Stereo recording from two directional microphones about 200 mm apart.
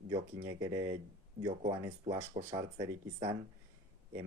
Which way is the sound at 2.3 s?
35° right (ahead or behind).